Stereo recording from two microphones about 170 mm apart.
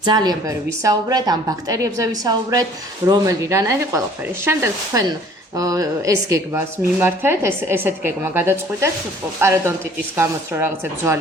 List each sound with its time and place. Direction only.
0.0 s a woman's voice: 25° right (ahead or behind)